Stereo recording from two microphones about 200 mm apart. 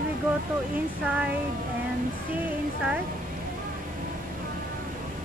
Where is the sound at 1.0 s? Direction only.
5° right (ahead or behind).